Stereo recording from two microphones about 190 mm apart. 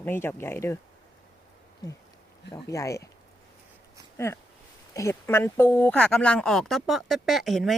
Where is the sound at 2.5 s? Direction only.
15° left (ahead or behind).